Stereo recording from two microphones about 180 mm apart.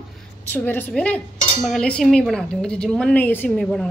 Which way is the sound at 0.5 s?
10° left (ahead or behind).